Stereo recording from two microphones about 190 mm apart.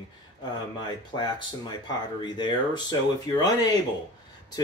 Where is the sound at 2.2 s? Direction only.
20° left (ahead or behind).